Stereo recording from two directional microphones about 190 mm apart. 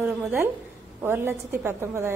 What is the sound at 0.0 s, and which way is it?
A woman's voice, 10° right (ahead or behind).